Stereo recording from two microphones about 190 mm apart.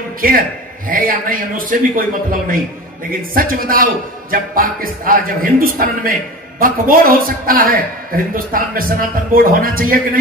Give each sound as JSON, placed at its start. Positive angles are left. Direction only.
{"t": 0.2, "sound": "a man's voice", "side_deg": -50}